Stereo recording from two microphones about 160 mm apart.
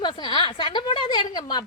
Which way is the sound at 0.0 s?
30° left (ahead or behind).